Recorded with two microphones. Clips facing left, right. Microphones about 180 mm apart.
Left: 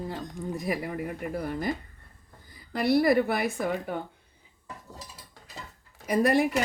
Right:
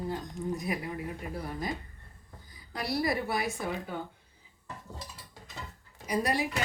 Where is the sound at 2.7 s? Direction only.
60° left (ahead or behind).